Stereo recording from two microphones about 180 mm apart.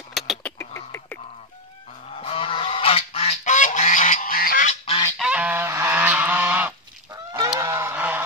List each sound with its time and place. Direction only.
0.1 s a sound: centre (ahead or behind)
0.6 s bird: 15° left (ahead or behind)
2.0 s goose: 35° left (ahead or behind); by 4.6 s 55° left (ahead or behind)
5.2 s goose: 5° right (ahead or behind)
7.3 s goose: 20° right (ahead or behind)